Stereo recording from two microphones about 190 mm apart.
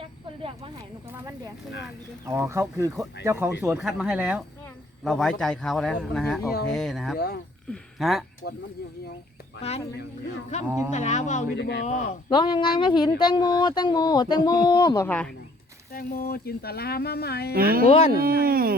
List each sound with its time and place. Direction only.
1.1 s speech: 15° right (ahead or behind); by 8.2 s centre (ahead or behind)
8.4 s speech: 70° left (ahead or behind)
9.6 s speech: 35° left (ahead or behind)
10.7 s speech: 10° right (ahead or behind)
10.9 s speech: 40° left (ahead or behind)
11.5 s speech: 60° left (ahead or behind)
11.9 s speech: 40° left (ahead or behind)
12.3 s speech: 25° left (ahead or behind); by 15.3 s 10° left (ahead or behind)
15.9 s speech: 50° left (ahead or behind)
17.5 s speech: 50° right (ahead or behind)
17.8 s speech: 30° left (ahead or behind)
18.2 s speech: 50° right (ahead or behind)